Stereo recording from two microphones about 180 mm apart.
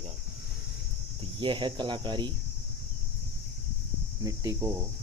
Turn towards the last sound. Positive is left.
turn(degrees=-20)  # may be behind; listen again after turning